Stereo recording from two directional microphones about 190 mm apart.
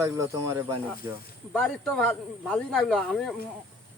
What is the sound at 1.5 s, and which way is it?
Speech, 5° left (ahead or behind).